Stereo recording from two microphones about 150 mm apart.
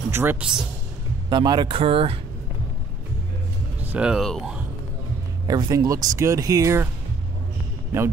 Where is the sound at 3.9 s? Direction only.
5° right (ahead or behind).